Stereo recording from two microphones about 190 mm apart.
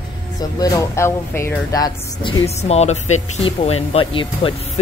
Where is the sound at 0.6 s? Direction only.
15° left (ahead or behind).